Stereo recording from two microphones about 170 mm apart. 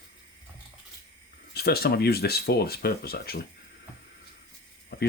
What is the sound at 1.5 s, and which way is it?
Speech, 70° left (ahead or behind).